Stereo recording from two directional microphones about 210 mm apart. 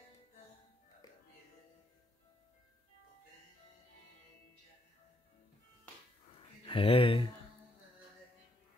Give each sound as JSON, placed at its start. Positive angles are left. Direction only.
{"t": 1.0, "sound": "music", "side_deg": 15}
{"t": 6.6, "sound": "speech", "side_deg": 25}